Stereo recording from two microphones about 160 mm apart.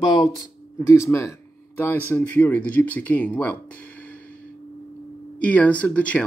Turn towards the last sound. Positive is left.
turn(degrees=10)  # may be behind; listen again after turning